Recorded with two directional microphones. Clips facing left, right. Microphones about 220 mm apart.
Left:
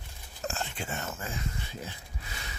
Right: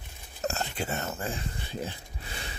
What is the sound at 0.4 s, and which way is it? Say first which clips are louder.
Speech: right 4 dB; 40° right (ahead or behind).